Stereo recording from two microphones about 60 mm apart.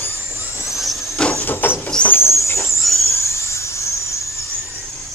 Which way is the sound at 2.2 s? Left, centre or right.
Left.